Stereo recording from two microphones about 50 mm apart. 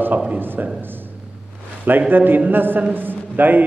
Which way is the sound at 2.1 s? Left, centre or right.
Right.